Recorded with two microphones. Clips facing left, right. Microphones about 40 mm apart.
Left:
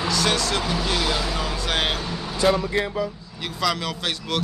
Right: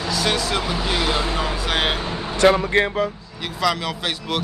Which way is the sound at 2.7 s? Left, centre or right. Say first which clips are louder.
Right 5 dB; right.